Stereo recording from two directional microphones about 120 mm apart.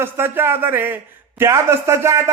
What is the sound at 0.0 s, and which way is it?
A man's voice, 20° right (ahead or behind).